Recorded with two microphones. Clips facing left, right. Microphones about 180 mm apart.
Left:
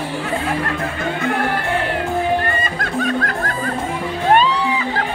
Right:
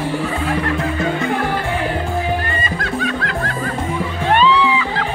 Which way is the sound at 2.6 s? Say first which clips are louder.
Left 1 dB; 50° left (ahead or behind).